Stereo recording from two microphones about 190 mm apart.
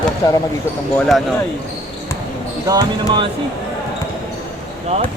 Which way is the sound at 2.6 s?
25° right (ahead or behind).